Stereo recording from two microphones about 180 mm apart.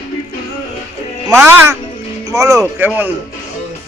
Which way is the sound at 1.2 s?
15° right (ahead or behind).